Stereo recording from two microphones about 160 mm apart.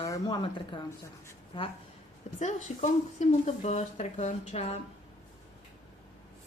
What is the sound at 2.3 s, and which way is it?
A woman's voice, 50° left (ahead or behind).